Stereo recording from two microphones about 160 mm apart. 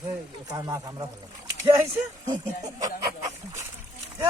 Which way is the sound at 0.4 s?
20° right (ahead or behind).